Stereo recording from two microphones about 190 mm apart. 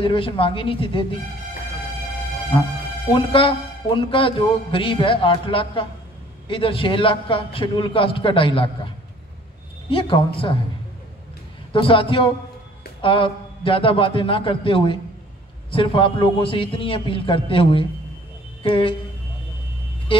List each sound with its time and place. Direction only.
0.0 s a man's voice: 25° left (ahead or behind)
3.1 s a man's voice: 25° left (ahead or behind)
9.8 s a man's voice: 25° left (ahead or behind)
11.7 s a man's voice: 25° left (ahead or behind)